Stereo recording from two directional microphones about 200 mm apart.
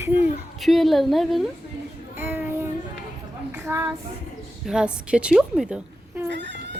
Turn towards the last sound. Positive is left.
turn(degrees=-60)  # may be behind; listen again after turning